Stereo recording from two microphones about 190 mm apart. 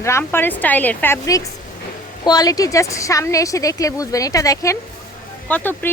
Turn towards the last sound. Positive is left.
turn(degrees=10)  # may be behind; listen again after turning